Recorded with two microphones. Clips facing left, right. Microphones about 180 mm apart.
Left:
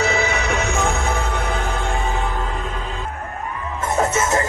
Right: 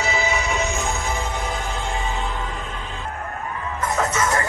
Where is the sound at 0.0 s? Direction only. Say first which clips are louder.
Left 3 dB; 55° left (ahead or behind).